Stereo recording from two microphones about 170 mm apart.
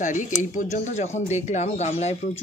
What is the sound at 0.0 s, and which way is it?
Speech, 50° left (ahead or behind).